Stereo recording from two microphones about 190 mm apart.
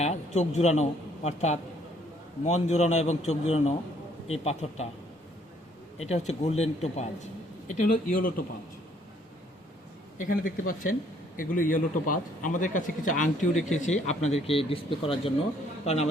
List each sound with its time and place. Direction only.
0.0 s a man's voice: 35° left (ahead or behind)
6.0 s a man's voice: 35° left (ahead or behind)
10.2 s a man's voice: 45° left (ahead or behind)